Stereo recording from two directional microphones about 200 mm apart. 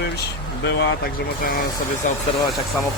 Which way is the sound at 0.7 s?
55° left (ahead or behind).